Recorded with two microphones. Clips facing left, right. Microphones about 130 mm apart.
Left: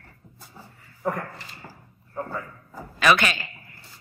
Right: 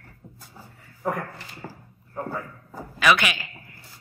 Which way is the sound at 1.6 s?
70° right (ahead or behind).